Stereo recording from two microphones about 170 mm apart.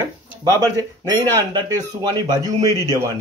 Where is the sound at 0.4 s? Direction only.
20° right (ahead or behind).